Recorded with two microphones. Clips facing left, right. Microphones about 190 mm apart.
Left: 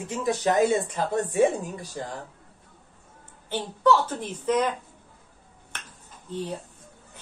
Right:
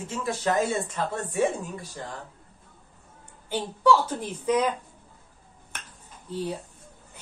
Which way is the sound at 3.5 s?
10° right (ahead or behind).